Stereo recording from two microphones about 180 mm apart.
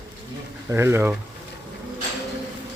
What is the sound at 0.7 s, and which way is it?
Speech, 15° right (ahead or behind).